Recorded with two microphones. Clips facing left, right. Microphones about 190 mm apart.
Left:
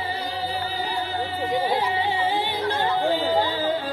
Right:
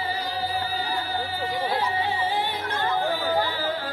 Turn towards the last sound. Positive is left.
turn(degrees=20)  # may be behind; listen again after turning